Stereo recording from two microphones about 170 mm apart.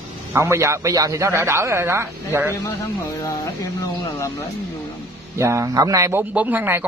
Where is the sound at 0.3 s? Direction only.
15° right (ahead or behind).